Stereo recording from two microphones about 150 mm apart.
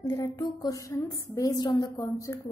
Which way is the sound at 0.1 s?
25° left (ahead or behind).